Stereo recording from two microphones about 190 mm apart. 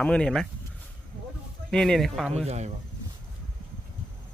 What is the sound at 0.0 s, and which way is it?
Speech, 5° left (ahead or behind).